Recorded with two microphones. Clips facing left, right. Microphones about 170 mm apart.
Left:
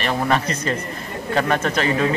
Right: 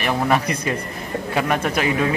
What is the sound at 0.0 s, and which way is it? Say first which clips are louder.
Speech: right 1 dB; 10° right (ahead or behind).